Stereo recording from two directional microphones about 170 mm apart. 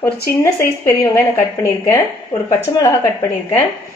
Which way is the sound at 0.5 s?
15° left (ahead or behind).